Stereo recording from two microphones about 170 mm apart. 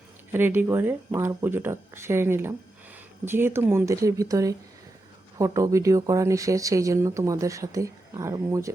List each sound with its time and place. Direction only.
0.3 s speech: 10° right (ahead or behind)